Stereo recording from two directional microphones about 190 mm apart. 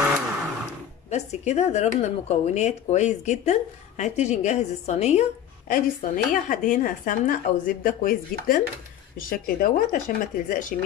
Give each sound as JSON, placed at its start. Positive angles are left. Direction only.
{"t": 1.1, "sound": "speech", "side_deg": 35}
{"t": 5.7, "sound": "speech", "side_deg": 45}